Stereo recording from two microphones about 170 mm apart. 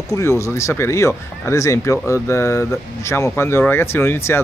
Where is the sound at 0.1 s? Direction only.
15° left (ahead or behind).